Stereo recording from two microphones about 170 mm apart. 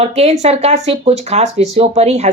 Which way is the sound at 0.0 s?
40° right (ahead or behind).